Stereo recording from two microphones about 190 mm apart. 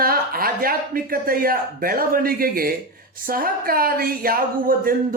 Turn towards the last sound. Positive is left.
turn(degrees=-50)  # may be behind; listen again after turning